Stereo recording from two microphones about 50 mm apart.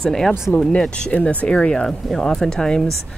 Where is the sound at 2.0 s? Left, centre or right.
Centre.